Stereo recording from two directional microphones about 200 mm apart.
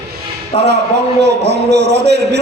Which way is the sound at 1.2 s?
55° right (ahead or behind).